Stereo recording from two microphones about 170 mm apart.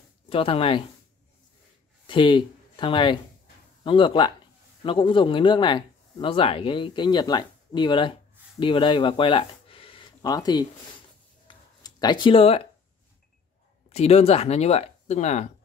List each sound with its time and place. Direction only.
0.3 s speech: 35° left (ahead or behind)
2.0 s speech: 30° left (ahead or behind)
11.4 s a sound: 25° left (ahead or behind)
13.8 s speech: 40° left (ahead or behind)